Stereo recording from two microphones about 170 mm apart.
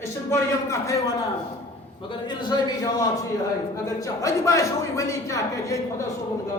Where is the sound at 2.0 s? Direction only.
30° left (ahead or behind).